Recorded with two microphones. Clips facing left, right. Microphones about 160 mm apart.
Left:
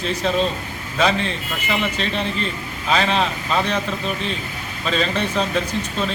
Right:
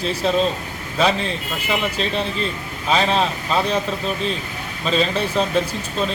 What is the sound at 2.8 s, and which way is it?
Speech, 5° right (ahead or behind).